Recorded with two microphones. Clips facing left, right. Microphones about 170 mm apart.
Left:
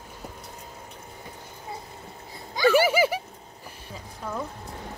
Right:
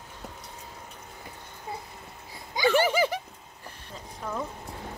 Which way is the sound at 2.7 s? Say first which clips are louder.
Left 3 dB; 10° left (ahead or behind).